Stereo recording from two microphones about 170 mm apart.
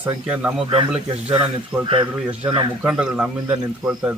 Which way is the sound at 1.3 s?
30° right (ahead or behind).